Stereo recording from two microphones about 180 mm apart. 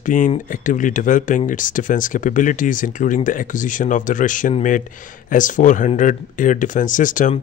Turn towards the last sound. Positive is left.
turn(degrees=45)  # may be behind; listen again after turning